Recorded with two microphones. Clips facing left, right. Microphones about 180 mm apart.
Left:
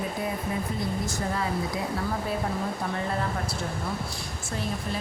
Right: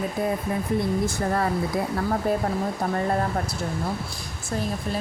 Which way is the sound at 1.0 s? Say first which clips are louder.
Right 5 dB; 55° right (ahead or behind).